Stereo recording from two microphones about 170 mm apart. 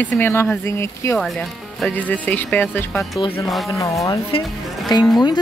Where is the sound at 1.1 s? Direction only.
Centre (ahead or behind).